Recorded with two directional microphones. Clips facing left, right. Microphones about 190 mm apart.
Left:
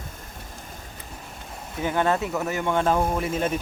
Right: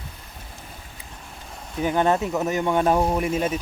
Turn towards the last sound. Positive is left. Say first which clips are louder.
# right 2 dB
turn(degrees=-10)  # may be behind; listen again after turning